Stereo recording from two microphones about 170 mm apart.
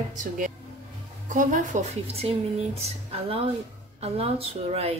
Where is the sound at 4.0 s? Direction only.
35° right (ahead or behind).